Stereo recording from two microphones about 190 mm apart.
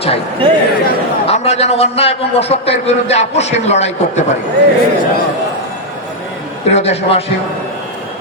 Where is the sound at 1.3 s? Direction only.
35° left (ahead or behind).